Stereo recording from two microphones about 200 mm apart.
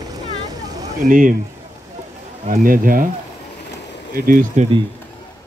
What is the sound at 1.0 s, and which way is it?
Speech, 40° right (ahead or behind).